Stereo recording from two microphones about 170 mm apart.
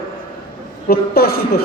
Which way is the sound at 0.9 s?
65° left (ahead or behind).